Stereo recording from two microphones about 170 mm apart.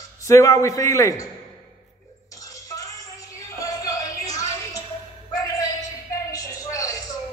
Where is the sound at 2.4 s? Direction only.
20° left (ahead or behind).